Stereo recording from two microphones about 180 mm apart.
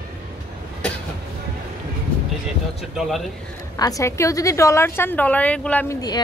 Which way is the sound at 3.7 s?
20° left (ahead or behind).